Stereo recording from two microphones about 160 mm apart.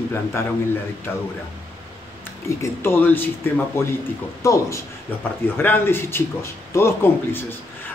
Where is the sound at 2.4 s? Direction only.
15° left (ahead or behind).